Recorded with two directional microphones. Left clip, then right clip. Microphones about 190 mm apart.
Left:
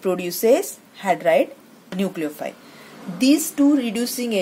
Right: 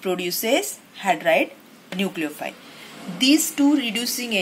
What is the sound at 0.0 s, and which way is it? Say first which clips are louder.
A woman's voice: left 4 dB; 55° left (ahead or behind).